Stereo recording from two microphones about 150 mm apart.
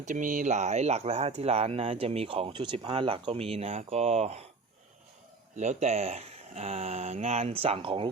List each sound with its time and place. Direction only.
0.0 s speech: 60° right (ahead or behind)
5.5 s speech: 50° right (ahead or behind)